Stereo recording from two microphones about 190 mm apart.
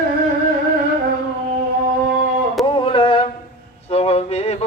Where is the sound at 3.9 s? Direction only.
35° left (ahead or behind).